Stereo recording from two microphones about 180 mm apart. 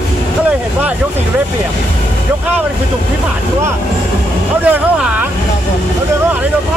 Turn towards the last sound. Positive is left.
turn(degrees=-5)  # may be behind; listen again after turning